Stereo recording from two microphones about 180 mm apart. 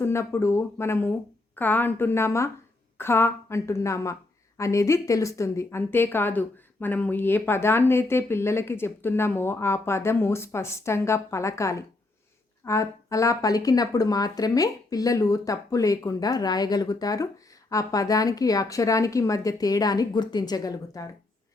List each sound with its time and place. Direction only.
0.0 s a woman's voice: 15° left (ahead or behind)